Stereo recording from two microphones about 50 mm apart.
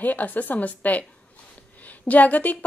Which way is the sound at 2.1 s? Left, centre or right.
Left.